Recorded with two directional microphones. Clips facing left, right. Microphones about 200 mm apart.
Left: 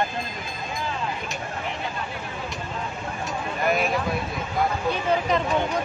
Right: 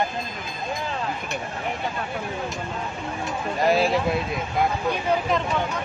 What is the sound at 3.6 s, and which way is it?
Speech, 30° right (ahead or behind).